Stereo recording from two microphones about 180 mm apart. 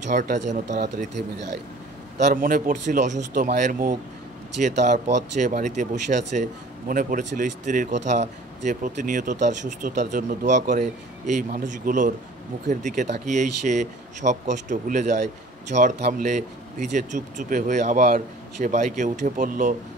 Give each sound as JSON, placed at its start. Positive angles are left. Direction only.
{"t": 0.0, "sound": "speech", "side_deg": -45}